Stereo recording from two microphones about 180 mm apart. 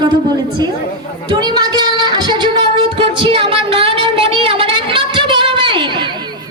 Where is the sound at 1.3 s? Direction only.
25° right (ahead or behind).